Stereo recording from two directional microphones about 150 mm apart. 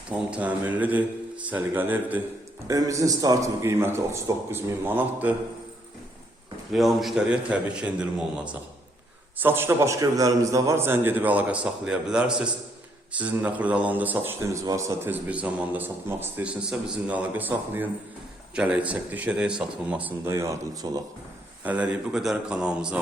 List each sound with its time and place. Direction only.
0.1 s a man's voice: 10° right (ahead or behind)
6.7 s speech: centre (ahead or behind)
9.4 s speech: 15° right (ahead or behind)
14.6 s speech: 20° right (ahead or behind)
21.6 s speech: 10° right (ahead or behind)